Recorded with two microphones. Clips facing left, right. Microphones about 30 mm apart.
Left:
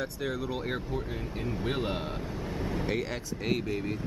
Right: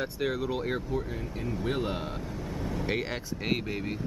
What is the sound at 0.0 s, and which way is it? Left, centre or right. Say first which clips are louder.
Speech: right 3 dB; centre.